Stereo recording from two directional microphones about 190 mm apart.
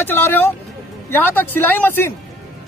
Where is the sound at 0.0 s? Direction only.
10° left (ahead or behind).